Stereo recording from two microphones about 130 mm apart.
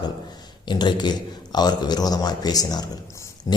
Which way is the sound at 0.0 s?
30° left (ahead or behind).